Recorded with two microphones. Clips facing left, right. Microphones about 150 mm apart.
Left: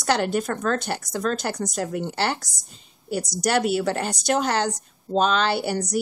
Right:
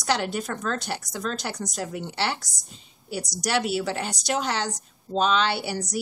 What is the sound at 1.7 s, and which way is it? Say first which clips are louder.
Speech: left 5 dB; 50° left (ahead or behind).